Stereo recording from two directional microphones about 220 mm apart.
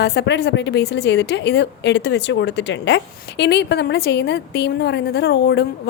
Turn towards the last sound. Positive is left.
turn(degrees=50)  # may be behind; listen again after turning